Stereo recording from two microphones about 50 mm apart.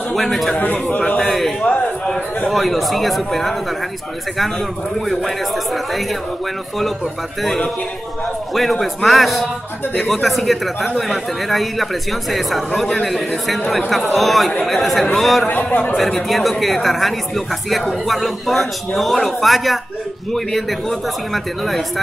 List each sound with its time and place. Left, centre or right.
0.1 s speech: centre
0.6 s speech: left
1.2 s a sound: centre
2.5 s speech: centre
7.4 s speech: centre
15.4 s speech: left
16.0 s speech: centre
21.3 s speech: centre